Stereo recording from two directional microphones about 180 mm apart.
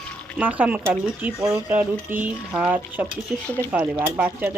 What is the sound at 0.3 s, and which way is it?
A woman's voice, 10° right (ahead or behind).